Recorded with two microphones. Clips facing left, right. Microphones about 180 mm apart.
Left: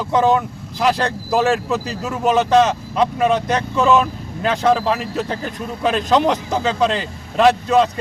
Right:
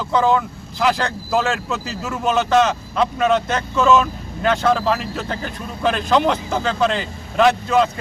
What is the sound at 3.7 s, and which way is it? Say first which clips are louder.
Speech: right 1 dB; 15° left (ahead or behind).